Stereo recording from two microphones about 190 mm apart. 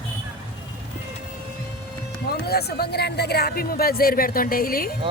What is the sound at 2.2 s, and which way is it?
A woman's voice, 55° left (ahead or behind).